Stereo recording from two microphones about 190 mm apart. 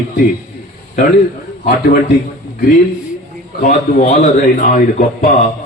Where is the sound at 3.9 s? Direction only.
55° left (ahead or behind).